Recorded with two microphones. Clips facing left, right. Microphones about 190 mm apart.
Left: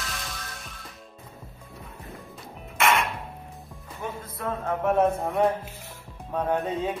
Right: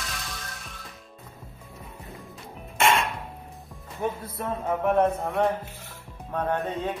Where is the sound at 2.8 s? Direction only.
30° right (ahead or behind).